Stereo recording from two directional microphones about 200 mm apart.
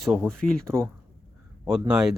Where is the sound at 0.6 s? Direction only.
15° right (ahead or behind).